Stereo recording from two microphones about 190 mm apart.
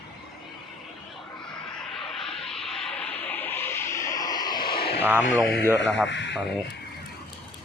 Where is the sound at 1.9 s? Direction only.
Centre (ahead or behind); by 4.7 s 20° left (ahead or behind).